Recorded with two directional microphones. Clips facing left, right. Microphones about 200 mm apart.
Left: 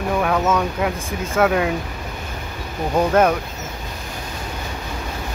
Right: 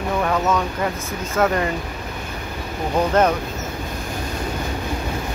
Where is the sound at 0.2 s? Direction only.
5° left (ahead or behind).